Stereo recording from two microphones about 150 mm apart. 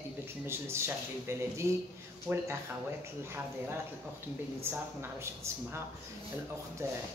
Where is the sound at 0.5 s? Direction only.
15° right (ahead or behind).